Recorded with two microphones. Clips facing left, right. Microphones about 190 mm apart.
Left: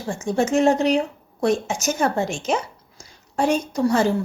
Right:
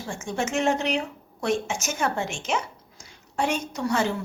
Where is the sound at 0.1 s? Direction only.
35° left (ahead or behind).